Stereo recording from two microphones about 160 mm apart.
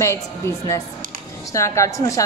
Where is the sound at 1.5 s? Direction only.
20° left (ahead or behind).